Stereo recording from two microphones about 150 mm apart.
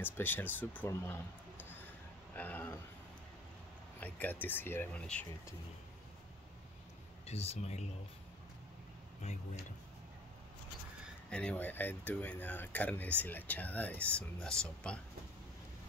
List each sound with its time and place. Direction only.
0.0 s speech: 15° left (ahead or behind)
2.3 s a sound: 10° left (ahead or behind)
4.0 s speech: 10° left (ahead or behind)
7.2 s speech: 45° left (ahead or behind)
11.2 s speech: 5° left (ahead or behind)